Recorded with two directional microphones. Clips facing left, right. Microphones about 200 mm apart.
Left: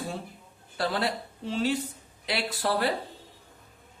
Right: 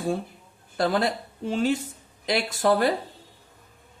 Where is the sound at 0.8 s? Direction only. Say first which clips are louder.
Right 5 dB; 45° right (ahead or behind).